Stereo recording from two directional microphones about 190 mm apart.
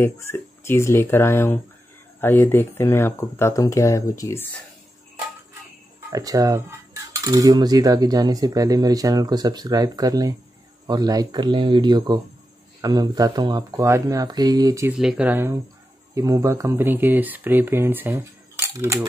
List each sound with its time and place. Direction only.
0.0 s speech: 15° left (ahead or behind)
6.0 s cutlery: 20° right (ahead or behind)
15.0 s speech: 5° right (ahead or behind)